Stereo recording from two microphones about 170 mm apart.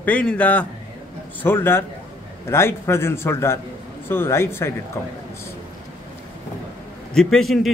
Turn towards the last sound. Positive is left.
turn(degrees=0)  # may be behind; listen again after turning